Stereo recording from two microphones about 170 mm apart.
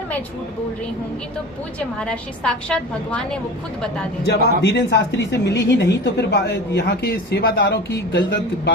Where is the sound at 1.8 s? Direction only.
5° left (ahead or behind).